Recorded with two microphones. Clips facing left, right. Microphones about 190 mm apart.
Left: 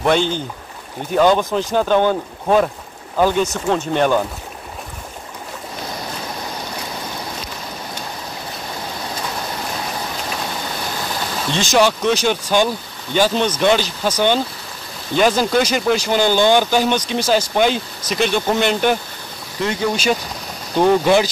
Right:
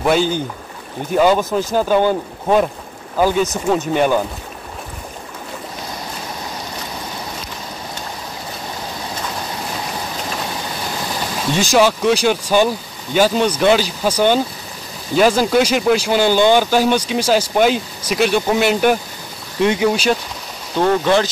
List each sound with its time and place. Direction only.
0.0 s speech: 5° right (ahead or behind)
11.7 s speech: 5° right (ahead or behind)
19.6 s speech: 20° right (ahead or behind)
20.7 s speech: 10° left (ahead or behind)